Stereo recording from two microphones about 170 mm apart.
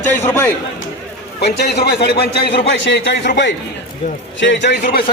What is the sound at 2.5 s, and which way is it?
A man's voice, 90° left.